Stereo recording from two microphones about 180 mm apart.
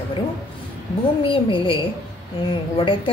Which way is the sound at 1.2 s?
30° left (ahead or behind).